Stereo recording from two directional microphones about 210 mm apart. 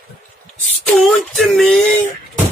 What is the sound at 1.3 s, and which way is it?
Speech, centre (ahead or behind).